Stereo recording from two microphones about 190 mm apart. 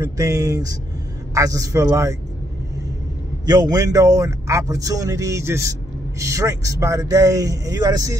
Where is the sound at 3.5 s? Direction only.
20° right (ahead or behind).